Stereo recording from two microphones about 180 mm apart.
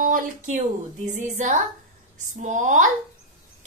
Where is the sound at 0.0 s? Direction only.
45° right (ahead or behind).